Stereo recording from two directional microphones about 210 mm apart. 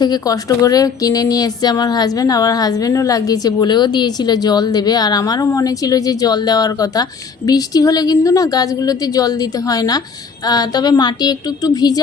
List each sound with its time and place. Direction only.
0.0 s a woman's voice: 20° left (ahead or behind)